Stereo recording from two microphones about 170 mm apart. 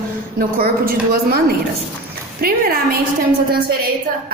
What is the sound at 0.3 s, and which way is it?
A woman's voice, 60° right (ahead or behind).